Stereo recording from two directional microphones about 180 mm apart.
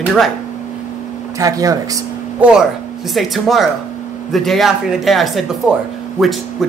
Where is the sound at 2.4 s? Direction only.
5° right (ahead or behind).